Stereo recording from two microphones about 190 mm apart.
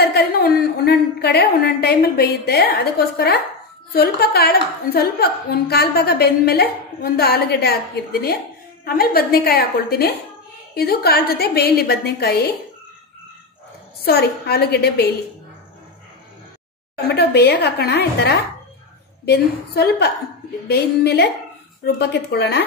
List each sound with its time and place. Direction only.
0.0 s a woman's voice: 55° left (ahead or behind)
14.0 s a woman's voice: 55° left (ahead or behind)
16.9 s a woman's voice: 55° left (ahead or behind)